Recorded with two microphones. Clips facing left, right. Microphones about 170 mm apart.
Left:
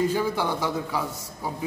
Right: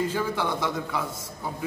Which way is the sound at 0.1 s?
10° left (ahead or behind).